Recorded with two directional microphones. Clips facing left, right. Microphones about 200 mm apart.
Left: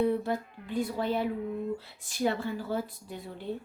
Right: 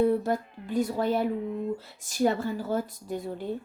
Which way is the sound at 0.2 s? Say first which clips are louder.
Right 3 dB; 45° right (ahead or behind).